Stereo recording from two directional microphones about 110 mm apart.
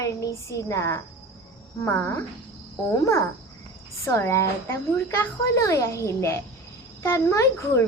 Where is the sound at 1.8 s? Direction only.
20° left (ahead or behind).